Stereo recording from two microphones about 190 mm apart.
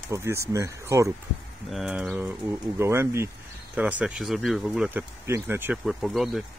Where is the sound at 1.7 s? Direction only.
Centre (ahead or behind).